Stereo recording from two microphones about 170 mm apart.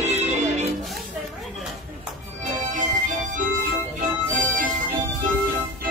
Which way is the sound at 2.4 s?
45° right (ahead or behind).